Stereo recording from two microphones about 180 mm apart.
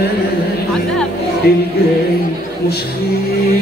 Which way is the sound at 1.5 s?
60° left (ahead or behind).